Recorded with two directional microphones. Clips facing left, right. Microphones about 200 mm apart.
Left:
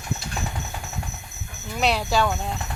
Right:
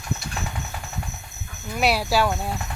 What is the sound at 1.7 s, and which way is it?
Speech, 10° right (ahead or behind).